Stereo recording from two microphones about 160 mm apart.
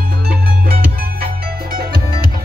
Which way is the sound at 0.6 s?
70° right (ahead or behind).